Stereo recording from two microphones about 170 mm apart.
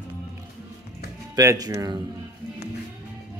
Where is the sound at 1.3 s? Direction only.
20° right (ahead or behind).